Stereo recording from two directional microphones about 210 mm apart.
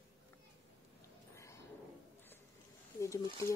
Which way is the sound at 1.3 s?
15° left (ahead or behind).